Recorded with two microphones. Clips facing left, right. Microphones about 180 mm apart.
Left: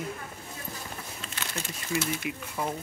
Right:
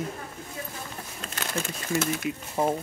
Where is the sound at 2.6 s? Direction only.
35° right (ahead or behind).